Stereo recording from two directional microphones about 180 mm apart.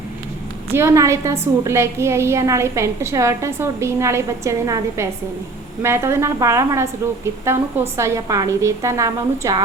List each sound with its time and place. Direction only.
0.7 s a woman's voice: 15° right (ahead or behind)